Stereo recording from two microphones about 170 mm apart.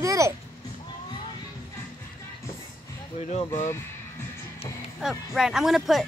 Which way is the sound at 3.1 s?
45° left (ahead or behind).